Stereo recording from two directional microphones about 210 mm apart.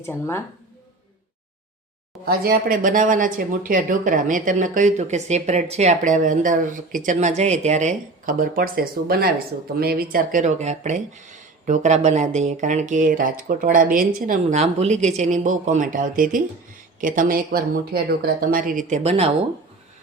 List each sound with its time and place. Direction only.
0.0 s speech: 10° left (ahead or behind)
2.2 s speech: 45° right (ahead or behind); by 19.3 s 30° right (ahead or behind)